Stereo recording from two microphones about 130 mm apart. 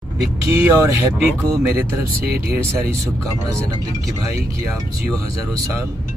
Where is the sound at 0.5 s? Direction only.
25° right (ahead or behind).